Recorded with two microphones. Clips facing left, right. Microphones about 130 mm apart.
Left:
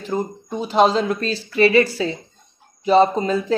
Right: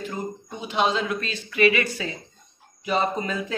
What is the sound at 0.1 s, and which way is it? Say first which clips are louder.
Speech: left 8 dB; 35° left (ahead or behind).